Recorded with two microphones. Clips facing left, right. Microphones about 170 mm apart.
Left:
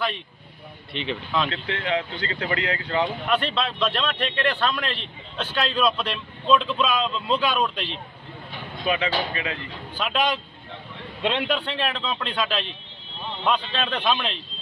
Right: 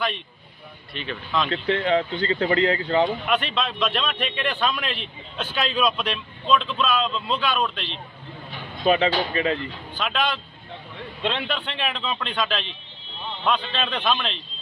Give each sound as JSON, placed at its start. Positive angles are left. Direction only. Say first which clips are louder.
{"t": 0.9, "sound": "speech", "louder": "left 4 dB", "side_deg": 20}
{"t": 1.5, "sound": "speech", "louder": "right 5 dB", "side_deg": -35}
{"t": 3.5, "sound": "a man's voice", "louder": "even", "side_deg": 0}
{"t": 8.8, "sound": "speech", "louder": "right 5 dB", "side_deg": -35}
{"t": 9.9, "sound": "speech", "louder": "left 2 dB", "side_deg": 10}
{"t": 11.5, "sound": "a man's voice", "louder": "left 2 dB", "side_deg": 0}